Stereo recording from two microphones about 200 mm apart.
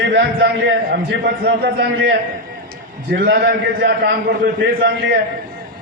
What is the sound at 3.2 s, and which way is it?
Speech, 55° right (ahead or behind).